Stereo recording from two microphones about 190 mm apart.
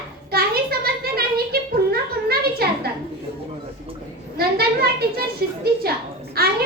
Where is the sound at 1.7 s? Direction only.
55° right (ahead or behind).